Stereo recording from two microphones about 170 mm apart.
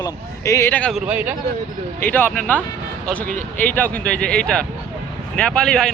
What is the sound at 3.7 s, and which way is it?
Speech, 10° left (ahead or behind).